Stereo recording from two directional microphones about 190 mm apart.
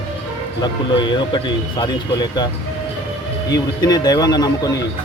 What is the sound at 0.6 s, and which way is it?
Speech, 25° left (ahead or behind).